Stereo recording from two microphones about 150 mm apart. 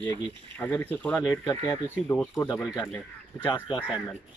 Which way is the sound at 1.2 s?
25° left (ahead or behind).